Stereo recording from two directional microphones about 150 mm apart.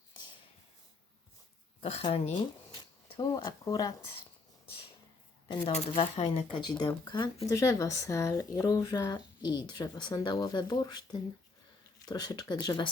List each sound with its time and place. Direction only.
1.8 s speech: 40° left (ahead or behind)
3.1 s speech: 30° left (ahead or behind)
5.5 s speech: 40° left (ahead or behind)